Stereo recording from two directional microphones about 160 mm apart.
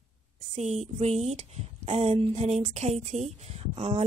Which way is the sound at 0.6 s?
45° right (ahead or behind).